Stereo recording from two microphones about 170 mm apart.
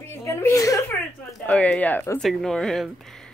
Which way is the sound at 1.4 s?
5° left (ahead or behind).